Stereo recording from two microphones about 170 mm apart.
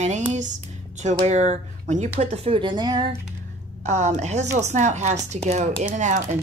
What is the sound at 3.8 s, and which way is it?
Speech, 40° right (ahead or behind).